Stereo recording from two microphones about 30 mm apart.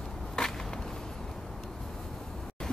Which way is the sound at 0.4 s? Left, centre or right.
Left.